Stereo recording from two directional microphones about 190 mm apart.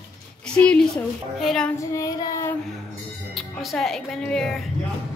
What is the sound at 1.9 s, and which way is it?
Child singing, 15° left (ahead or behind).